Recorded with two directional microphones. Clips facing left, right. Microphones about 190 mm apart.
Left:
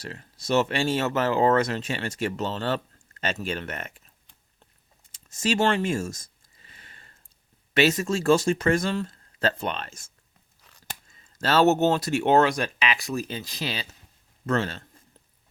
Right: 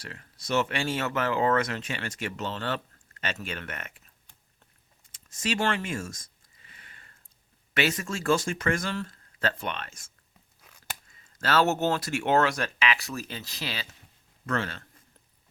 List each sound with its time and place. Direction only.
0.0 s speech: 30° left (ahead or behind)
5.4 s a sound: 30° left (ahead or behind)
7.8 s speech: 25° left (ahead or behind)
11.3 s speech: 25° left (ahead or behind)